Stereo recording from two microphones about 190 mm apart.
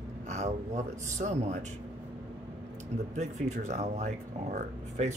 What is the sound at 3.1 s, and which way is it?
Speech, 35° right (ahead or behind).